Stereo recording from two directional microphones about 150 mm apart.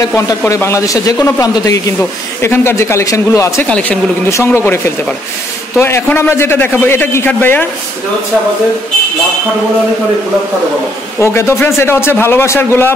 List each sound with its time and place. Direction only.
0.5 s a man's voice: 20° left (ahead or behind)
3.6 s a man's voice: 5° left (ahead or behind)
4.3 s a man's voice: 20° left (ahead or behind)
11.1 s a man's voice: 20° left (ahead or behind)